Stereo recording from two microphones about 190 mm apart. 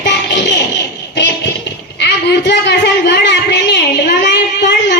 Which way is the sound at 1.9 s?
65° left (ahead or behind).